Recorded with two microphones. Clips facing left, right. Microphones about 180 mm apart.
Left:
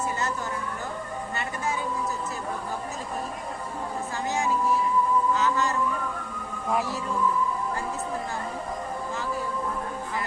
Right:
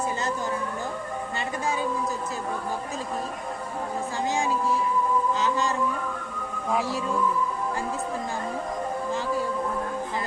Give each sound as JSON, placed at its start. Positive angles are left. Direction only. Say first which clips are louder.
{"t": 5.3, "sound": "music", "louder": "left 1 dB", "side_deg": -15}